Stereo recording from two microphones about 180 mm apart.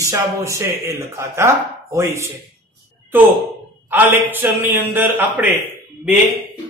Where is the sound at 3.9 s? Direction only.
10° right (ahead or behind).